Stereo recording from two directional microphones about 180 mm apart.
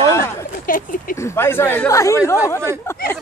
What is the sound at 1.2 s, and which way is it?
Speech, 15° left (ahead or behind).